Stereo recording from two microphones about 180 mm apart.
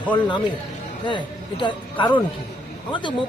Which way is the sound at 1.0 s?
25° left (ahead or behind).